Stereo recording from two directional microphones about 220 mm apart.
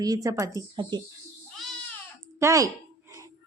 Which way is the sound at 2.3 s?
15° right (ahead or behind).